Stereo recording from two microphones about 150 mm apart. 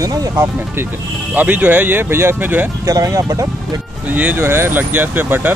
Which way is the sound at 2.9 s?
20° right (ahead or behind).